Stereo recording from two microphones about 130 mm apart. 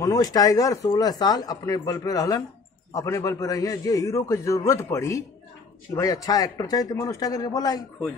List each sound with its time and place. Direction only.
0.0 s speech: 30° left (ahead or behind)